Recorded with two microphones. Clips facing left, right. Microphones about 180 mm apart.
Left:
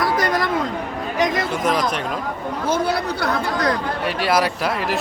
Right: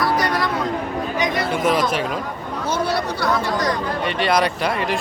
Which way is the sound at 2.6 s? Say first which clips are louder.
Left 1 dB; 55° left (ahead or behind).